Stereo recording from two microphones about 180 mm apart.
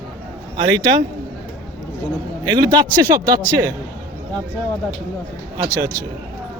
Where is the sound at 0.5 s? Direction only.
25° right (ahead or behind).